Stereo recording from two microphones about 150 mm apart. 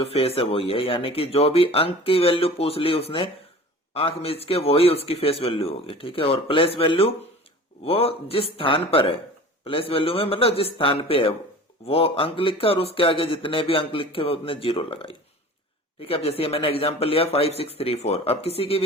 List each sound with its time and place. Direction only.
0.0 s speech: 40° left (ahead or behind)